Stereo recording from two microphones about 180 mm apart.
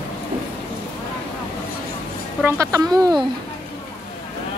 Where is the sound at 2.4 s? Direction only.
15° right (ahead or behind).